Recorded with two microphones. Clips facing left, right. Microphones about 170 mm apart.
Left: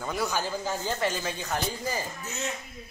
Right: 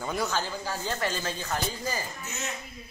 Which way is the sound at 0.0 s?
Centre (ahead or behind).